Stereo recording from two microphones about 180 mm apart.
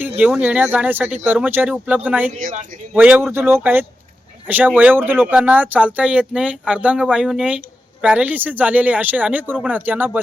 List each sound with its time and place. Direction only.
0.2 s speech: 10° right (ahead or behind)
2.3 s speech: 45° right (ahead or behind)
2.9 s speech: 10° right (ahead or behind)